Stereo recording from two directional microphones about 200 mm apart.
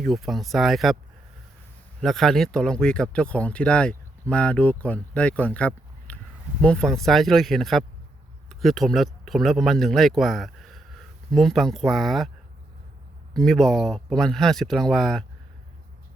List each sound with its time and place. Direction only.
0.0 s speech: centre (ahead or behind)
2.0 s speech: centre (ahead or behind)
13.3 s speech: centre (ahead or behind)